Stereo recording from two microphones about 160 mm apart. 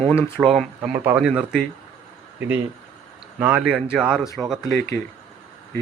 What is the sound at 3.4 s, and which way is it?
Speech, 10° right (ahead or behind).